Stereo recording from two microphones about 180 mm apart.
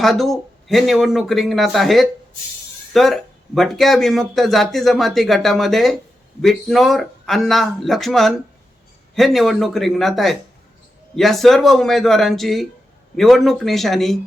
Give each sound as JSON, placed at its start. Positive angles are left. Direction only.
{"t": 0.0, "sound": "speech", "side_deg": 0}